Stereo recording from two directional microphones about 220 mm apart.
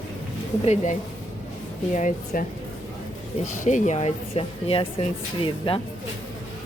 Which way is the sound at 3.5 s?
35° left (ahead or behind).